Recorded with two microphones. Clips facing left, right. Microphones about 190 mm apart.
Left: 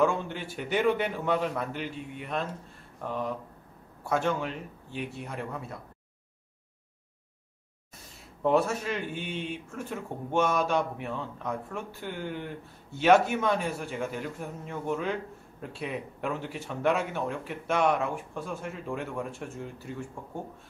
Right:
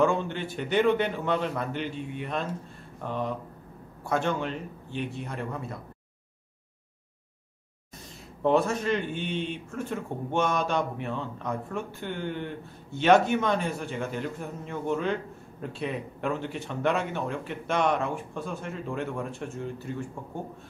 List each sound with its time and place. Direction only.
0.0 s speech: 5° left (ahead or behind)
8.4 s speech: 5° left (ahead or behind)